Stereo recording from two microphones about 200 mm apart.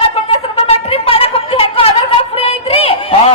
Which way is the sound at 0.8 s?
30° left (ahead or behind).